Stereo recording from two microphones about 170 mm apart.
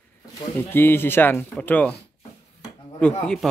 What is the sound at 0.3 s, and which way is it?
Speech, 15° left (ahead or behind).